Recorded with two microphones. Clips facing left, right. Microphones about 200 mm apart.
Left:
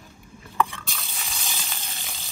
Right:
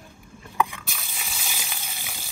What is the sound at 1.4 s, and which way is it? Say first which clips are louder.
Frying: even; 15° right (ahead or behind).